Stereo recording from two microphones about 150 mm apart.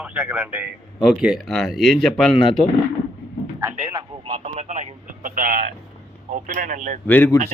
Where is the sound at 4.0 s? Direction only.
40° right (ahead or behind).